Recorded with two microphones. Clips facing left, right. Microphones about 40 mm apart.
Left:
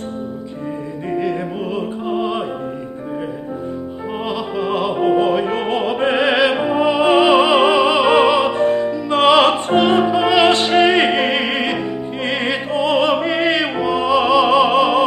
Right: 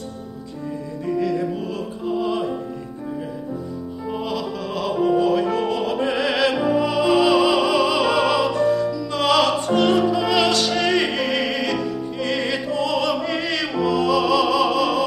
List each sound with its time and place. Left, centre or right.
1.1 s music: left
4.2 s music: left